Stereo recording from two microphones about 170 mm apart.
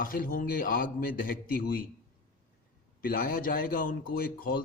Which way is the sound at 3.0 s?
60° left (ahead or behind).